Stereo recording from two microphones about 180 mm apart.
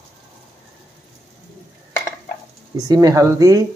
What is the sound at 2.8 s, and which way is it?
Speech, 20° right (ahead or behind).